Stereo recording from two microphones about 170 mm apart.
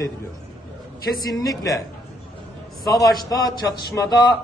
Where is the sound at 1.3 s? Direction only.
20° left (ahead or behind).